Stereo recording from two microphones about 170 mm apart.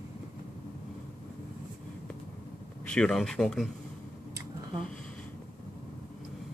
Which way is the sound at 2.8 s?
5° left (ahead or behind).